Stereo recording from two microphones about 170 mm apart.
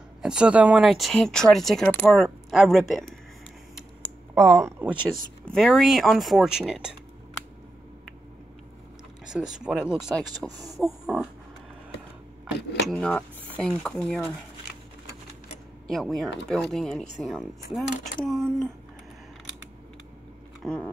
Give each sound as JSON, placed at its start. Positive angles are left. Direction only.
{"t": 0.2, "sound": "speech", "side_deg": -5}
{"t": 4.4, "sound": "speech", "side_deg": 0}
{"t": 4.6, "sound": "speech", "side_deg": -10}
{"t": 5.4, "sound": "speech", "side_deg": 5}
{"t": 9.2, "sound": "speech", "side_deg": -5}
{"t": 10.5, "sound": "speech", "side_deg": -20}
{"t": 10.8, "sound": "speech", "side_deg": 0}
{"t": 12.8, "sound": "speech", "side_deg": 5}
{"t": 15.9, "sound": "speech", "side_deg": 0}
{"t": 20.6, "sound": "speech", "side_deg": 5}